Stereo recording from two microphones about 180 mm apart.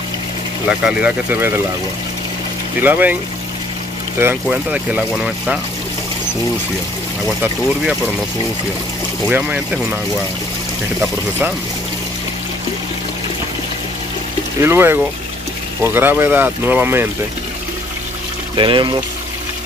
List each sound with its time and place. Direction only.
0.7 s speech: 5° right (ahead or behind)
2.8 s speech: 10° right (ahead or behind)
4.2 s speech: 10° right (ahead or behind)
7.2 s speech: 5° left (ahead or behind)
9.3 s speech: 5° right (ahead or behind)
11.0 s speech: 10° right (ahead or behind)
14.6 s speech: 15° right (ahead or behind)
18.6 s speech: 25° right (ahead or behind)